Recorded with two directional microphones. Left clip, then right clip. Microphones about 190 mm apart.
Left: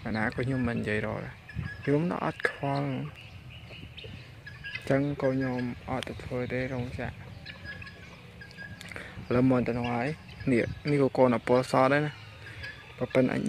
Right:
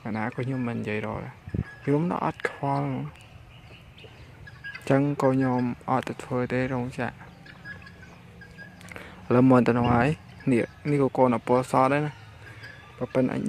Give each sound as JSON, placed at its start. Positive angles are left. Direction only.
{"t": 0.0, "sound": "speech", "side_deg": -5}
{"t": 4.8, "sound": "speech", "side_deg": -25}
{"t": 8.9, "sound": "a sound", "side_deg": -15}
{"t": 9.6, "sound": "speech", "side_deg": -45}
{"t": 10.4, "sound": "speech", "side_deg": -15}